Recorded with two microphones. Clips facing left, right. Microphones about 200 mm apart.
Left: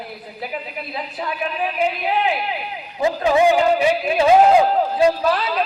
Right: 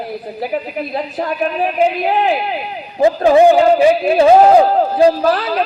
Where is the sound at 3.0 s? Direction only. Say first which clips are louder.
Right 7 dB; 50° right (ahead or behind).